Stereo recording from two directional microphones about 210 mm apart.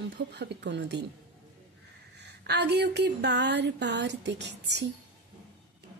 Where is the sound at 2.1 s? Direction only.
55° right (ahead or behind).